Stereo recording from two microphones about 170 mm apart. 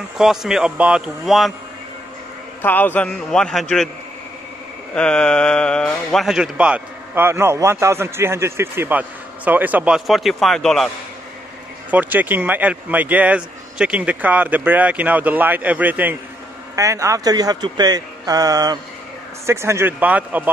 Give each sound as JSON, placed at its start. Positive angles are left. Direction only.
{"t": 0.2, "sound": "speech", "side_deg": 0}
{"t": 2.6, "sound": "speech", "side_deg": 10}
{"t": 4.9, "sound": "speech", "side_deg": 5}
{"t": 11.9, "sound": "speech", "side_deg": -10}